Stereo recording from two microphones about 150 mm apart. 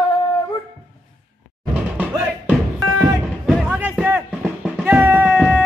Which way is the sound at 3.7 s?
15° right (ahead or behind).